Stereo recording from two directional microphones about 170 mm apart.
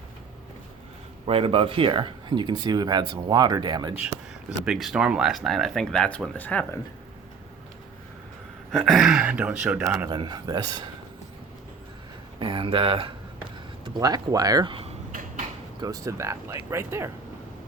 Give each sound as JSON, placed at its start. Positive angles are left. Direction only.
{"t": 1.3, "sound": "speech", "side_deg": -35}
{"t": 4.0, "sound": "speech", "side_deg": -5}
{"t": 8.7, "sound": "speech", "side_deg": 0}
{"t": 10.1, "sound": "speech", "side_deg": -25}
{"t": 12.4, "sound": "speech", "side_deg": -30}
{"t": 15.8, "sound": "speech", "side_deg": -20}